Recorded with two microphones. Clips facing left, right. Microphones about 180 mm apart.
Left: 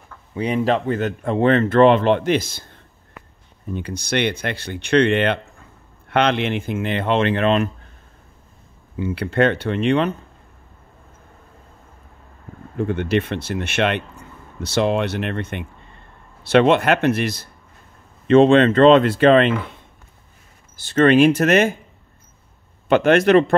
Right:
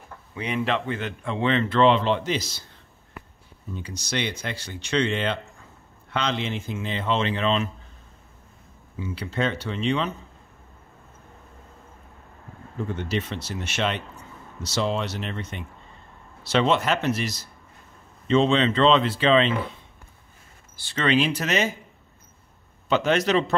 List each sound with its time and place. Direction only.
0.3 s speech: 35° left (ahead or behind); by 7.7 s 60° left (ahead or behind)
8.9 s speech: 60° left (ahead or behind)
12.7 s speech: 65° left (ahead or behind)
20.8 s speech: 50° left (ahead or behind)
22.8 s speech: 55° left (ahead or behind)